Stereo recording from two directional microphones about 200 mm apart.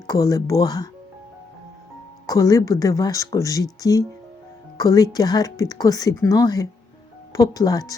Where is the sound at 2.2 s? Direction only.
15° left (ahead or behind).